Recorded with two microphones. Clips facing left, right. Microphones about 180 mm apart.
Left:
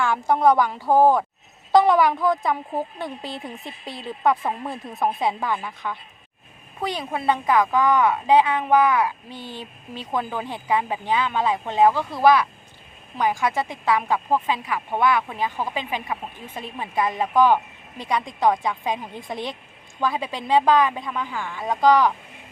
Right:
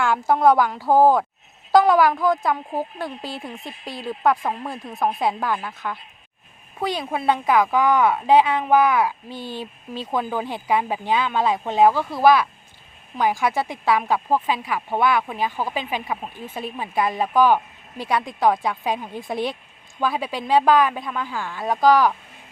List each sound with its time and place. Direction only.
0.0 s a woman's voice: 5° right (ahead or behind)
15.7 s speech: 20° left (ahead or behind)
16.6 s a woman's voice: 5° right (ahead or behind)